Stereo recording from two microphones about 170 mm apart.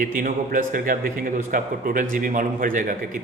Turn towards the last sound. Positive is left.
turn(degrees=-50)  # may be behind; listen again after turning